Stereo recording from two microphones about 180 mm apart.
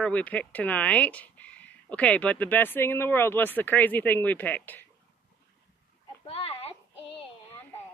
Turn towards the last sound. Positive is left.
turn(degrees=30)  # may be behind; listen again after turning